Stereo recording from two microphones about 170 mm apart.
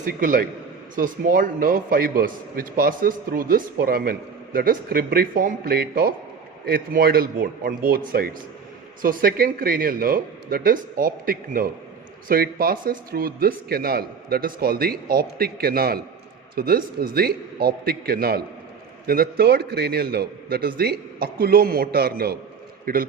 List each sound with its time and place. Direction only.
0.0 s a man's voice: 55° right (ahead or behind)